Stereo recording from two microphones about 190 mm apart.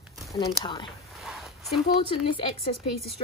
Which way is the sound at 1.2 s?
Centre (ahead or behind).